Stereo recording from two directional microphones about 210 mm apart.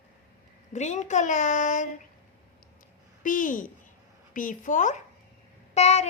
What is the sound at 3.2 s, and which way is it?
A woman's voice, 40° left (ahead or behind).